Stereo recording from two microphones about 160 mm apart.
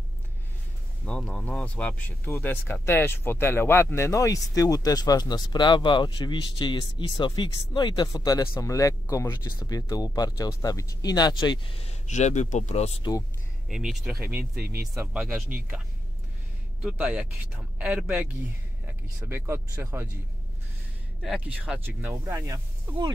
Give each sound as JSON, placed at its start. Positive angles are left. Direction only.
{"t": 1.0, "sound": "speech", "side_deg": 5}
{"t": 12.1, "sound": "speech", "side_deg": 45}
{"t": 13.7, "sound": "speech", "side_deg": -5}
{"t": 16.8, "sound": "speech", "side_deg": -5}
{"t": 21.2, "sound": "speech", "side_deg": 0}